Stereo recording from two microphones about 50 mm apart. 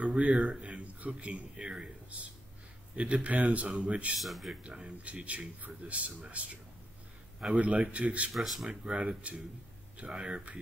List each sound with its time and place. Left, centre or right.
0.0 s speech: right
3.6 s speech: centre
4.6 s speech: right
8.4 s speech: centre
8.8 s speech: right